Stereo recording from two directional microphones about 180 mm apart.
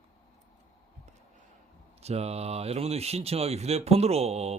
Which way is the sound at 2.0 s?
35° right (ahead or behind).